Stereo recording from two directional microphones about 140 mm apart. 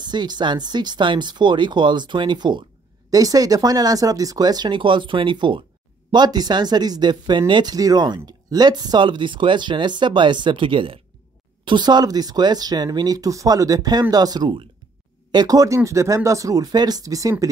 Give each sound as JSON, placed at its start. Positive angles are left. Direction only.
{"t": 0.0, "sound": "speech", "side_deg": -30}